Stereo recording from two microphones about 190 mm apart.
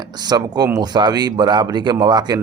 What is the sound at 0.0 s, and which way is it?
Speech, 20° right (ahead or behind).